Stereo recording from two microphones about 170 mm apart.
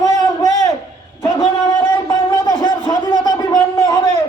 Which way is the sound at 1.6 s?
20° left (ahead or behind).